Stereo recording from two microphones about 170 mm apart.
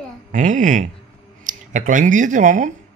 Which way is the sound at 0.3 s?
50° right (ahead or behind).